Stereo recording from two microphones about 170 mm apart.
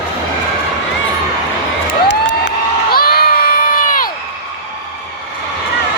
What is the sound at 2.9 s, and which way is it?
Crowd, 60° left (ahead or behind).